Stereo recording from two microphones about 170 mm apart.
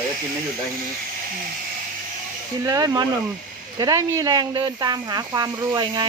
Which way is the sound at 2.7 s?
20° right (ahead or behind).